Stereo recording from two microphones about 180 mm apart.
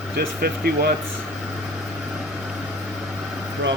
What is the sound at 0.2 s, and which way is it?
Speech, 55° right (ahead or behind).